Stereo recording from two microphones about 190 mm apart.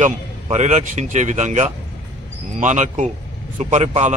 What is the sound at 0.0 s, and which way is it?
A man's voice, 40° right (ahead or behind).